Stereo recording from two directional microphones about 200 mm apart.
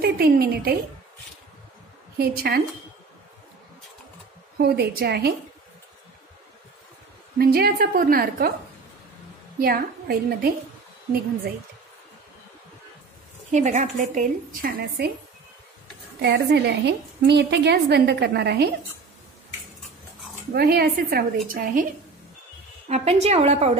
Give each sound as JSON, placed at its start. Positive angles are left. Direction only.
{"t": 0.0, "sound": "a woman's voice", "side_deg": -50}
{"t": 2.1, "sound": "a woman's voice", "side_deg": -50}
{"t": 4.6, "sound": "a woman's voice", "side_deg": -50}
{"t": 7.3, "sound": "a woman's voice", "side_deg": -50}
{"t": 9.6, "sound": "a woman's voice", "side_deg": -50}
{"t": 13.5, "sound": "a woman's voice", "side_deg": -35}
{"t": 16.2, "sound": "a woman's voice", "side_deg": -55}
{"t": 20.5, "sound": "a woman's voice", "side_deg": -55}
{"t": 22.8, "sound": "a woman's voice", "side_deg": -30}